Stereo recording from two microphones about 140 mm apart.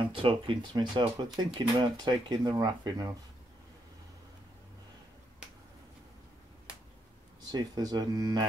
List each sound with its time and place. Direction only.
0.1 s speech: 35° right (ahead or behind)
7.5 s speech: 30° right (ahead or behind)